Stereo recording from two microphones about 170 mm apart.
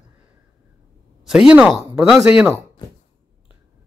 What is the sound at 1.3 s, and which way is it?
Speech, 5° right (ahead or behind).